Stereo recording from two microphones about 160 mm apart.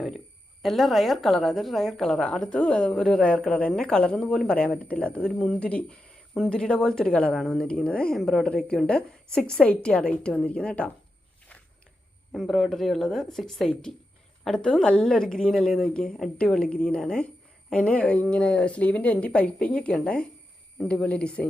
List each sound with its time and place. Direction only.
0.6 s a woman's voice: centre (ahead or behind)
12.3 s a woman's voice: centre (ahead or behind)